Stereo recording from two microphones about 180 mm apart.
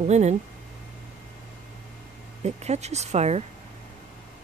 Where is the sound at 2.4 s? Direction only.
35° right (ahead or behind).